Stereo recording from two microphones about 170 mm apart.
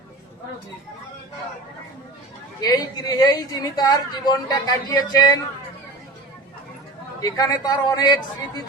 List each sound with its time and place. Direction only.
2.6 s speech: 25° left (ahead or behind)
7.2 s speech: 20° left (ahead or behind)